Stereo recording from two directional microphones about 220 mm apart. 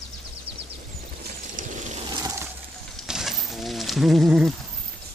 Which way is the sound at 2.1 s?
15° right (ahead or behind).